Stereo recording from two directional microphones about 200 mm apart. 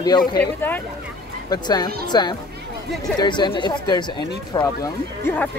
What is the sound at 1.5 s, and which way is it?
Speech, 20° left (ahead or behind).